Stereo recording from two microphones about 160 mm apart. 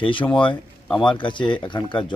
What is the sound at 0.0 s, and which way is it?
Speech, 30° left (ahead or behind).